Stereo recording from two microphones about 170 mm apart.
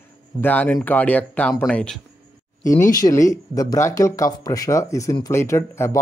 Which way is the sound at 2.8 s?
20° left (ahead or behind).